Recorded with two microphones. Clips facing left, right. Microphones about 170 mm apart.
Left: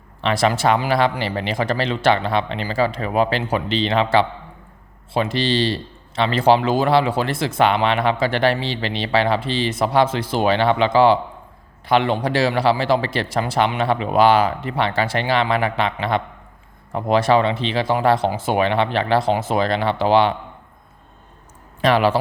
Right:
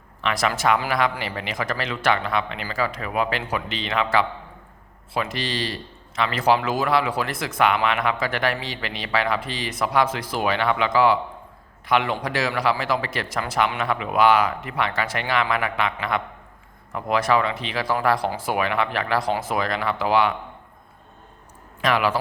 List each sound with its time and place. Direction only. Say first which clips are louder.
0.2 s a man's voice: left 5 dB; 30° left (ahead or behind)
21.8 s speech: left 5 dB; 30° left (ahead or behind)